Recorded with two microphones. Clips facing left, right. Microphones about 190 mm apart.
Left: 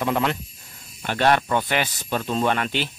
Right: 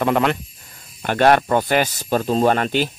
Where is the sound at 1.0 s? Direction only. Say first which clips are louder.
Right 5 dB; 50° right (ahead or behind).